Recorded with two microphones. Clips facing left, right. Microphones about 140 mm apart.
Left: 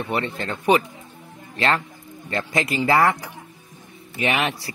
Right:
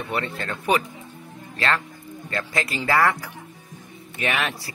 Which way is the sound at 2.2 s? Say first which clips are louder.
Left 3 dB; 20° left (ahead or behind).